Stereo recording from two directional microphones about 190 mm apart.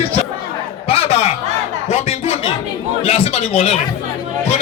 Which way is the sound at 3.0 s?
30° left (ahead or behind).